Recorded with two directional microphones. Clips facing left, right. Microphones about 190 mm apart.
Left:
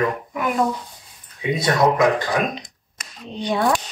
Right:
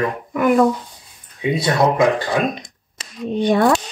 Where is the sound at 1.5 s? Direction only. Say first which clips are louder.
Right 1 dB; 30° right (ahead or behind).